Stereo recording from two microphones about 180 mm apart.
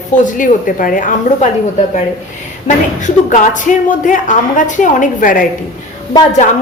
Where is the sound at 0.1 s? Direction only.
45° left (ahead or behind).